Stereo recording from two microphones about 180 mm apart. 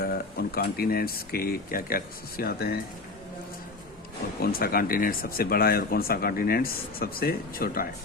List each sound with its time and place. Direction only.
0.0 s speech: 60° left (ahead or behind)
4.4 s speech: 55° left (ahead or behind)